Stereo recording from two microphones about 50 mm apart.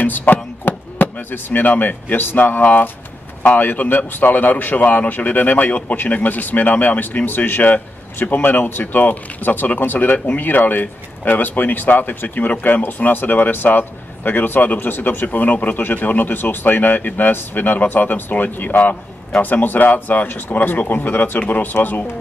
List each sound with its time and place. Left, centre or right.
0.0 s chop: left
1.1 s a man's voice: left